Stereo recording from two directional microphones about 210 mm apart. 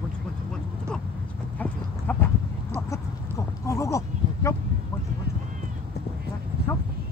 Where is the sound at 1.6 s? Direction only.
10° left (ahead or behind).